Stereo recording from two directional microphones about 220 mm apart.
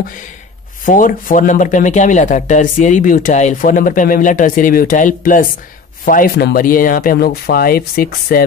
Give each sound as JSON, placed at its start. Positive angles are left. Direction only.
{"t": 0.8, "sound": "speech", "side_deg": 35}